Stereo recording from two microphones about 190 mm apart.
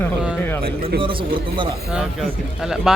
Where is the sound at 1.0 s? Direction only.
25° right (ahead or behind).